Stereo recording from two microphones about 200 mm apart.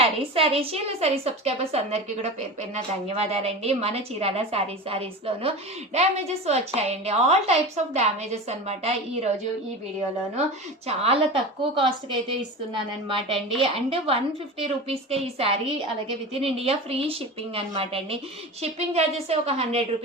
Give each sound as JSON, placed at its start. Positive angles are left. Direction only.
{"t": 0.0, "sound": "a woman's voice", "side_deg": -30}
{"t": 10.8, "sound": "a woman's voice", "side_deg": -30}